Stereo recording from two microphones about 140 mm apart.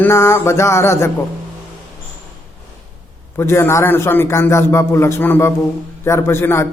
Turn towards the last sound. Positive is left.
turn(degrees=15)  # may be behind; listen again after turning